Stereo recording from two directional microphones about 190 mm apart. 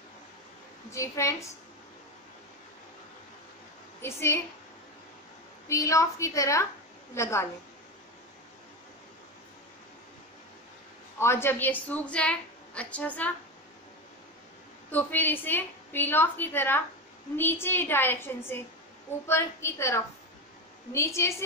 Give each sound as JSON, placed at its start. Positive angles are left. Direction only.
{"t": 0.9, "sound": "a woman's voice", "side_deg": 15}
{"t": 4.0, "sound": "a woman's voice", "side_deg": 15}
{"t": 5.7, "sound": "a woman's voice", "side_deg": 15}
{"t": 11.1, "sound": "a woman's voice", "side_deg": 15}
{"t": 14.9, "sound": "a woman's voice", "side_deg": 10}